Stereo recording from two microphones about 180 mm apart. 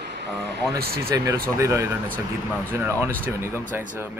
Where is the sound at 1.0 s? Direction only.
20° right (ahead or behind).